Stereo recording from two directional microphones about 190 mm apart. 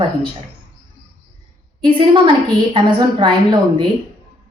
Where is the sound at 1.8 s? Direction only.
25° right (ahead or behind).